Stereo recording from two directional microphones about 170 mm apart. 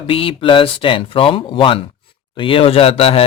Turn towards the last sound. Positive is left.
turn(degrees=35)  # may be behind; listen again after turning